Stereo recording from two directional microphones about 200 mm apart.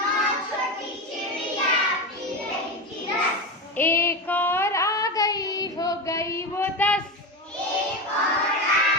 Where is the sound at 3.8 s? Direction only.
10° left (ahead or behind).